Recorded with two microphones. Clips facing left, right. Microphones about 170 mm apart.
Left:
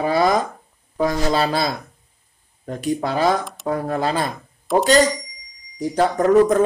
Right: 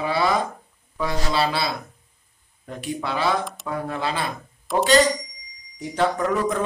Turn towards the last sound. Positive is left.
turn(degrees=45)  # may be behind; listen again after turning